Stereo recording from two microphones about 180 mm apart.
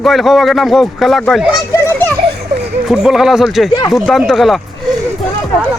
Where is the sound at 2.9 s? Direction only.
Centre (ahead or behind).